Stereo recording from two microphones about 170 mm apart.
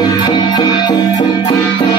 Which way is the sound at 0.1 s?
25° left (ahead or behind).